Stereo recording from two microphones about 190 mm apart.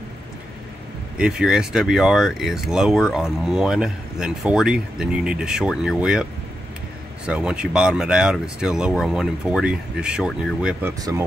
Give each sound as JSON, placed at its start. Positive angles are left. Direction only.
{"t": 1.1, "sound": "speech", "side_deg": -5}
{"t": 7.2, "sound": "speech", "side_deg": -5}